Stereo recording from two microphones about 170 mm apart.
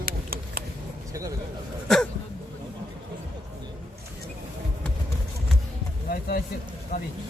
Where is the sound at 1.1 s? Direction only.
20° right (ahead or behind).